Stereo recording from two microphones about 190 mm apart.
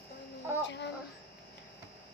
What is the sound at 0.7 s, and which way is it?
Speech, 65° left (ahead or behind).